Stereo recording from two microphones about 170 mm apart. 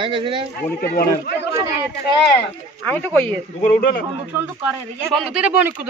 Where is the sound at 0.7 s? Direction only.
65° left (ahead or behind).